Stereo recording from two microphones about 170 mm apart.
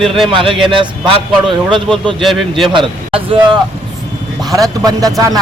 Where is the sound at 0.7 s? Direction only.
30° right (ahead or behind).